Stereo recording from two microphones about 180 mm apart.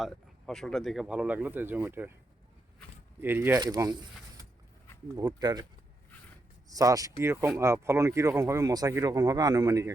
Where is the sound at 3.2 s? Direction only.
10° right (ahead or behind).